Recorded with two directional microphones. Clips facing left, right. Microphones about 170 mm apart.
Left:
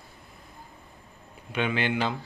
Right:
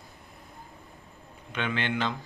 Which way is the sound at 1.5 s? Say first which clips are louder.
Left 3 dB; 10° left (ahead or behind).